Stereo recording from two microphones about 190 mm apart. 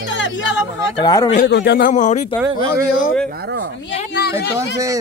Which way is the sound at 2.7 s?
50° left (ahead or behind).